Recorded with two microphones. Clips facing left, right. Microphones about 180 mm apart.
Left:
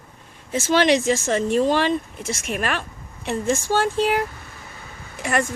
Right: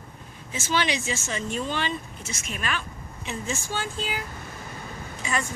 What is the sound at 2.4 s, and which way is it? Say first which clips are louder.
Speech: left 5 dB; 65° left (ahead or behind).